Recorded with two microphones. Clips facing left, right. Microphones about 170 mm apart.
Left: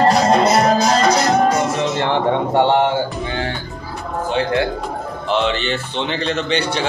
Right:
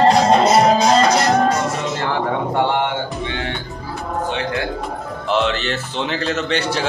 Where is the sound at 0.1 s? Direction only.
Centre (ahead or behind).